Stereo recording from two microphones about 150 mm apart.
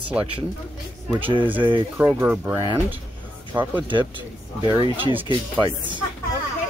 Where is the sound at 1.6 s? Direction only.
35° right (ahead or behind).